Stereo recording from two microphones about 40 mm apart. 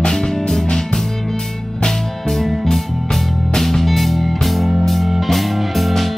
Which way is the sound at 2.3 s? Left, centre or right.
Centre.